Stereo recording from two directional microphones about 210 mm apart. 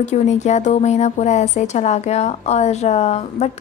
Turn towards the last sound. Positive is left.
turn(degrees=30)  # may be behind; listen again after turning